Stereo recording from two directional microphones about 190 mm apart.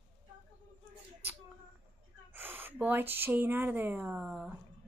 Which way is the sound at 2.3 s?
10° right (ahead or behind).